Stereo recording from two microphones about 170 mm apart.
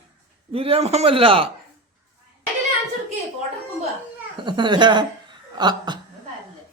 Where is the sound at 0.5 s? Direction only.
35° right (ahead or behind).